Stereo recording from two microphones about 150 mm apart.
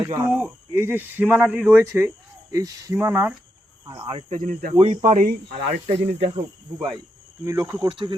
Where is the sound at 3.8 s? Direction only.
25° right (ahead or behind).